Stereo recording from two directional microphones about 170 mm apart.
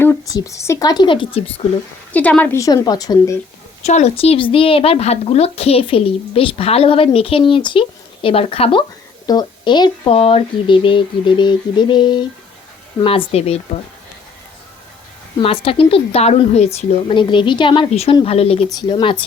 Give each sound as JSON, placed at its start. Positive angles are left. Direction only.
{"t": 0.0, "sound": "speech", "side_deg": 20}
{"t": 2.1, "sound": "speech", "side_deg": 10}
{"t": 3.8, "sound": "a woman's voice", "side_deg": 40}
{"t": 15.4, "sound": "a woman's voice", "side_deg": 35}
{"t": 18.7, "sound": "speech", "side_deg": 25}